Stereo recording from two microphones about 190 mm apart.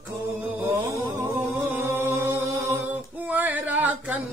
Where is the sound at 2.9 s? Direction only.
10° right (ahead or behind).